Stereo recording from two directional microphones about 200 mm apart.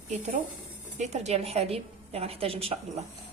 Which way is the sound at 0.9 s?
35° right (ahead or behind).